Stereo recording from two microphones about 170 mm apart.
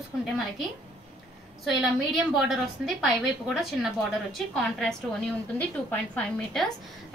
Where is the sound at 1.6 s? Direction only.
Centre (ahead or behind).